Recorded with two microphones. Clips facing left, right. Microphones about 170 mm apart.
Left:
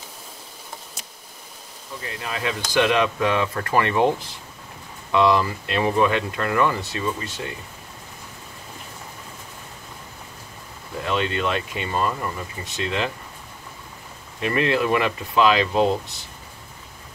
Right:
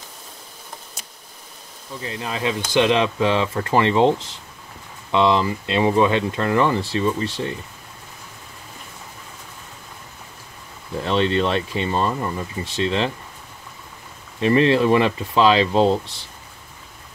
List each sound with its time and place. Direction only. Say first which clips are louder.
2.0 s speech: right 3 dB; 25° right (ahead or behind)
11.1 s speech: right 4 dB; 30° right (ahead or behind)
14.4 s speech: right 5 dB; 30° right (ahead or behind)